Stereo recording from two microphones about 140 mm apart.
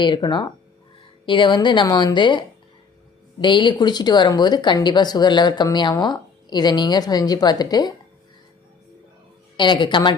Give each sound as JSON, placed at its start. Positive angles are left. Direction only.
{"t": 0.0, "sound": "speech", "side_deg": 35}
{"t": 3.4, "sound": "speech", "side_deg": 35}
{"t": 9.6, "sound": "speech", "side_deg": 35}